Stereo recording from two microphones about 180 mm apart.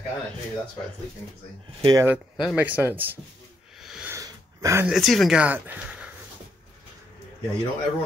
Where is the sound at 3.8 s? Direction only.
5° right (ahead or behind).